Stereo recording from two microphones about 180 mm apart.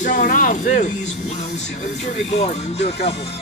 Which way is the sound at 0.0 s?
45° left (ahead or behind).